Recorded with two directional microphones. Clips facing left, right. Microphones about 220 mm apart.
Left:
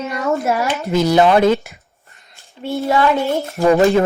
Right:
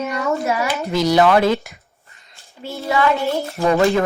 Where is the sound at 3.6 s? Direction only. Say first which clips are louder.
Left 4 dB; 15° left (ahead or behind).